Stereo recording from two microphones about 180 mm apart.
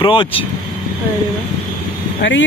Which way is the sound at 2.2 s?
90° left.